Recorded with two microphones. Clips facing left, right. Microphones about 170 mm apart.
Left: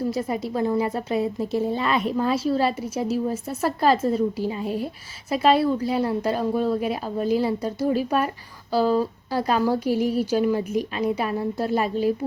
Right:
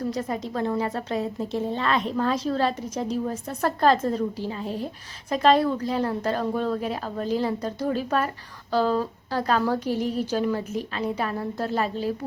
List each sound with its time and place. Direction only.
0.0 s a woman's voice: 10° left (ahead or behind)